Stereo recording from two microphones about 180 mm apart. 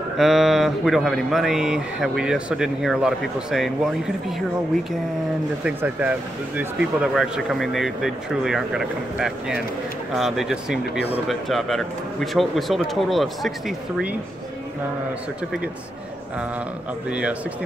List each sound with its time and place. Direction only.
0.2 s speech: centre (ahead or behind)
5.6 s speech: 5° right (ahead or behind)
17.1 s speech: 5° right (ahead or behind)